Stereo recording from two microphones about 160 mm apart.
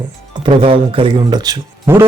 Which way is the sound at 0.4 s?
30° right (ahead or behind).